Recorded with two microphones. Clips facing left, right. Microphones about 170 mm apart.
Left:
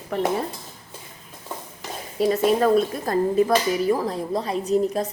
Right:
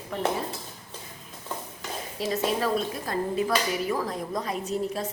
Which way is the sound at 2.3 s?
50° left (ahead or behind).